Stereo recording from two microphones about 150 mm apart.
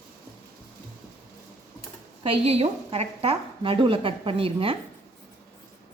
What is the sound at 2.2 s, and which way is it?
A woman's voice, 40° right (ahead or behind).